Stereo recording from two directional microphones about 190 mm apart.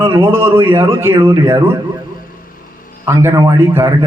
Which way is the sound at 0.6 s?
10° right (ahead or behind).